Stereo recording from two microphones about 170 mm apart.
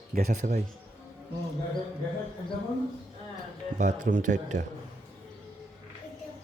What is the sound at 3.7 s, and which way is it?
Speech, 50° right (ahead or behind).